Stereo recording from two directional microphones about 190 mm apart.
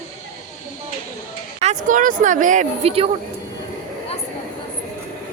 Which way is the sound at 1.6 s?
40° right (ahead or behind).